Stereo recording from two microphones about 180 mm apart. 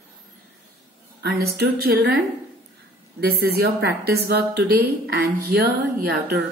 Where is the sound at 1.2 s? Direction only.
60° right (ahead or behind).